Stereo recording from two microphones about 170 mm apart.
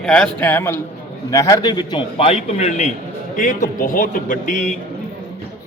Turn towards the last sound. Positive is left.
turn(degrees=45)  # may be behind; listen again after turning